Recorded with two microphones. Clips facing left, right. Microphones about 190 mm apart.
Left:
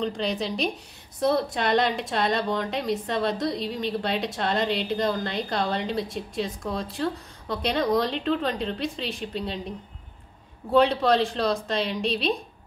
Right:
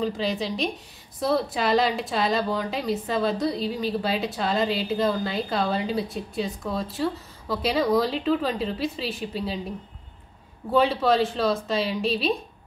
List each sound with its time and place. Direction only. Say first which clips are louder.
0.0 s a woman's voice: right 1 dB; centre (ahead or behind)
10.7 s a woman's voice: left 1 dB; centre (ahead or behind)